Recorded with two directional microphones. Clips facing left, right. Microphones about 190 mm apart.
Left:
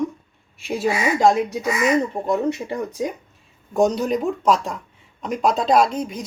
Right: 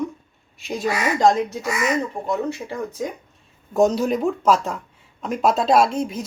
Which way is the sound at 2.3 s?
20° left (ahead or behind).